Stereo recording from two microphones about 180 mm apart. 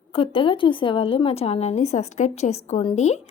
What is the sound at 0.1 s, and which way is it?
A woman's voice, 30° left (ahead or behind).